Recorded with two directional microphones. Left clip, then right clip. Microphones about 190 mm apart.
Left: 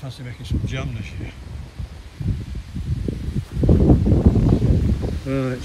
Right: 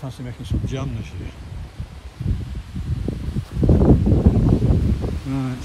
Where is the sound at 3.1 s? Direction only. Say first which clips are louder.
Even; 20° right (ahead or behind).